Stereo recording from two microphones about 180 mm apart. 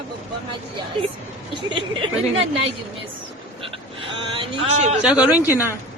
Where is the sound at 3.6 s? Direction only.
30° right (ahead or behind).